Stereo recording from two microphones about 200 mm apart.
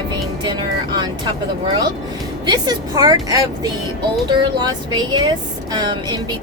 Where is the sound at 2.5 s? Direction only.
20° right (ahead or behind).